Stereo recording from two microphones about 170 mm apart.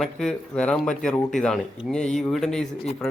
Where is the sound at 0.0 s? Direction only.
5° left (ahead or behind).